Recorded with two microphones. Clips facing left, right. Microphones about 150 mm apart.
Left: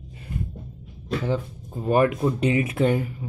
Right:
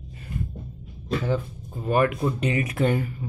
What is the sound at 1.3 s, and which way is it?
Speech, 20° left (ahead or behind).